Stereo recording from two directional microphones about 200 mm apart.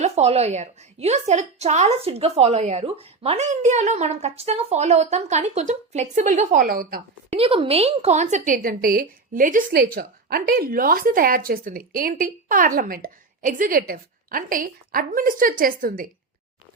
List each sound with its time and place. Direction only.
0.0 s a woman's voice: 30° right (ahead or behind)
7.3 s a woman's voice: 30° right (ahead or behind); by 16.0 s 45° right (ahead or behind)